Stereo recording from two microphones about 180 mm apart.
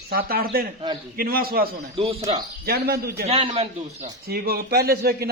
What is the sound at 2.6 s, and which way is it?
Speech, 60° right (ahead or behind).